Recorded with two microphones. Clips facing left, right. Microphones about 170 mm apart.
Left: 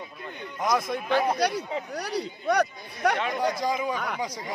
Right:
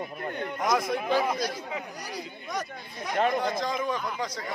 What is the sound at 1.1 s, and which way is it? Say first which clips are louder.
Speech: left 5 dB; 70° left (ahead or behind).